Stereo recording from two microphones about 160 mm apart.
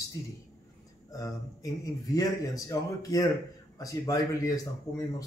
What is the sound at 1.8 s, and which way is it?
Speech, 20° left (ahead or behind).